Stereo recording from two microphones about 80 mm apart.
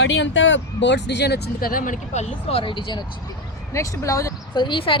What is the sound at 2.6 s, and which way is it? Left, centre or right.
Speech, left.